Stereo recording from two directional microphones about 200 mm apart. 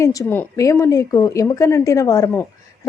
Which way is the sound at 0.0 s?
15° left (ahead or behind).